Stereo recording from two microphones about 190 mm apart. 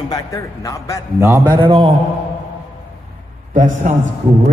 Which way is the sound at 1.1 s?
15° right (ahead or behind).